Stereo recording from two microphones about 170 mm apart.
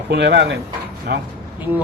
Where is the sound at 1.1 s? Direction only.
70° right (ahead or behind).